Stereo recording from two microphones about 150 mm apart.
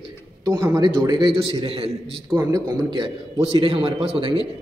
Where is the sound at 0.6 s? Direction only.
25° right (ahead or behind).